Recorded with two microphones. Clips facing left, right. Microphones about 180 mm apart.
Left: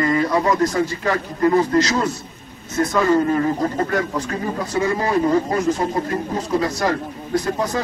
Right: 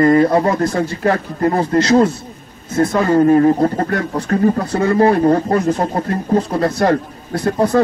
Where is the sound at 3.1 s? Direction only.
45° right (ahead or behind).